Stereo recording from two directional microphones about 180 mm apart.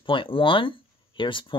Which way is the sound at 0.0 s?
30° left (ahead or behind).